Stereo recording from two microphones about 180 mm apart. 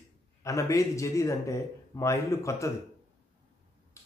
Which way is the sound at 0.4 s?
15° left (ahead or behind).